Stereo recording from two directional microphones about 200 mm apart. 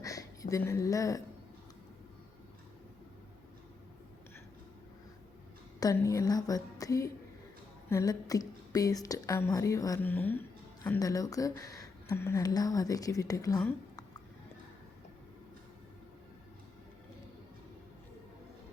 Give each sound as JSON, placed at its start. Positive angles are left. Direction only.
{"t": 0.0, "sound": "speech", "side_deg": 15}
{"t": 5.8, "sound": "speech", "side_deg": 15}